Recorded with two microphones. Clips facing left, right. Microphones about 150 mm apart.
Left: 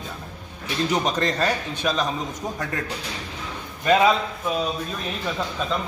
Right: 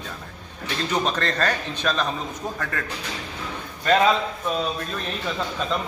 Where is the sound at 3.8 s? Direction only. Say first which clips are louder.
Left 1 dB; 10° left (ahead or behind).